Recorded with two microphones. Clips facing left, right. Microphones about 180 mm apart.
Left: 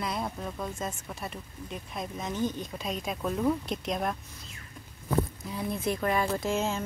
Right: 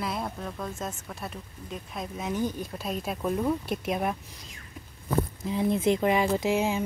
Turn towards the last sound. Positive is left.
turn(degrees=-15)  # may be behind; listen again after turning